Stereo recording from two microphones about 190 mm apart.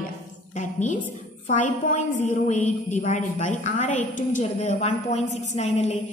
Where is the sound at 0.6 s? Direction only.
40° left (ahead or behind).